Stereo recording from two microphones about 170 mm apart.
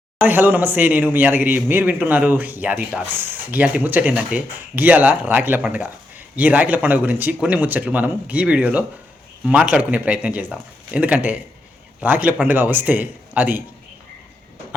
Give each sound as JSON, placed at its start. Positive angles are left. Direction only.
{"t": 0.2, "sound": "speech", "side_deg": -10}